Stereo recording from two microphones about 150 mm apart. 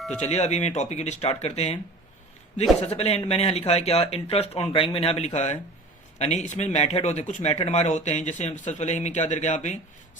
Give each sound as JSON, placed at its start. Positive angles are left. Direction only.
{"t": 0.2, "sound": "speech", "side_deg": 45}
{"t": 2.9, "sound": "speech", "side_deg": 45}